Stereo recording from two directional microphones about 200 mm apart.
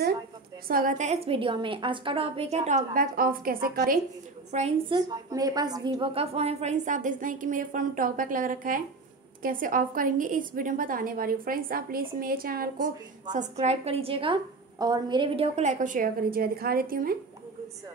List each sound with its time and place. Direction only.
0.7 s a woman's voice: 45° right (ahead or behind)
4.5 s a woman's voice: 35° right (ahead or behind); by 17.2 s 50° right (ahead or behind)